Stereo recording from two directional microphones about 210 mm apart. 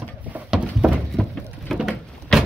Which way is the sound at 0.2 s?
5° right (ahead or behind).